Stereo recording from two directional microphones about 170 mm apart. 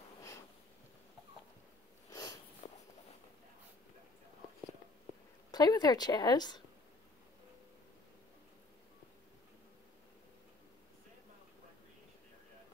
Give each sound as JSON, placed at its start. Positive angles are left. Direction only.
{"t": 2.0, "sound": "a sound", "side_deg": 20}
{"t": 2.6, "sound": "walk", "side_deg": 40}
{"t": 5.5, "sound": "a woman's voice", "side_deg": 25}